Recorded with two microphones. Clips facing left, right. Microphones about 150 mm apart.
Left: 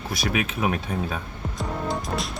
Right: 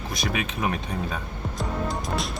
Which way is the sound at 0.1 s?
5° left (ahead or behind).